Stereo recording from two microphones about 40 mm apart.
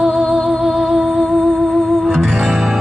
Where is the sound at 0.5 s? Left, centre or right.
Centre.